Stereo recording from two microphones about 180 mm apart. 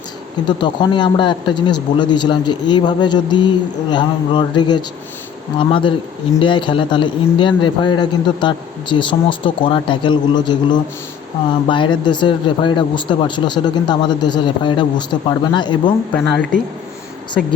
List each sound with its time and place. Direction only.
0.4 s speech: 25° left (ahead or behind)
16.3 s speech: 5° left (ahead or behind)